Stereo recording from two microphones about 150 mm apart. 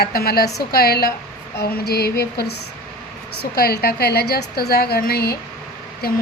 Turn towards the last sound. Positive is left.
turn(degrees=90)